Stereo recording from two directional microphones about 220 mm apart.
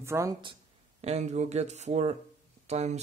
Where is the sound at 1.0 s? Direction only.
30° right (ahead or behind).